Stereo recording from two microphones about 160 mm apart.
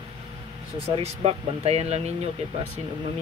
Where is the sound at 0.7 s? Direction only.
40° right (ahead or behind).